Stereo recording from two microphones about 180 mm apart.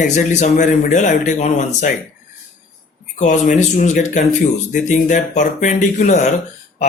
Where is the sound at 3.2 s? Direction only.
45° left (ahead or behind).